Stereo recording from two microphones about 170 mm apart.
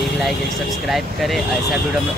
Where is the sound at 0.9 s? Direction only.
Centre (ahead or behind).